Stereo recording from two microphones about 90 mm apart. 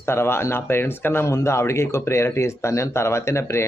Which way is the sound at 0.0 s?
25° left (ahead or behind).